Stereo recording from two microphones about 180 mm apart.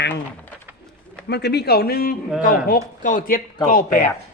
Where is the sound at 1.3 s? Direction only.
65° left (ahead or behind); by 4.0 s 45° left (ahead or behind).